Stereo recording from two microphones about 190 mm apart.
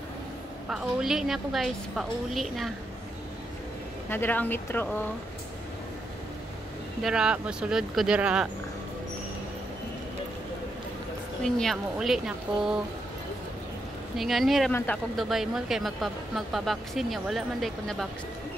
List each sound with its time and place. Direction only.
0.7 s speech: 5° right (ahead or behind)
4.1 s speech: 10° left (ahead or behind)
7.0 s speech: 5° right (ahead or behind)
11.4 s speech: 5° left (ahead or behind)
14.1 s speech: centre (ahead or behind)
14.7 s speech: 10° left (ahead or behind)
15.1 s speech: centre (ahead or behind)